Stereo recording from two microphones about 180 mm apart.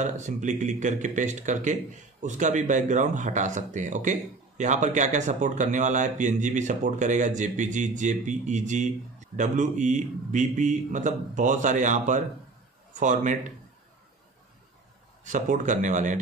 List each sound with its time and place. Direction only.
0.0 s speech: 40° right (ahead or behind)
15.2 s speech: 45° right (ahead or behind)